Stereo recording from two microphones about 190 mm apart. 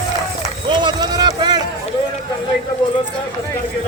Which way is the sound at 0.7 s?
25° right (ahead or behind).